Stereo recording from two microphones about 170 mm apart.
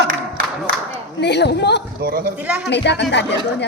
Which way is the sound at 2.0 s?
60° right (ahead or behind).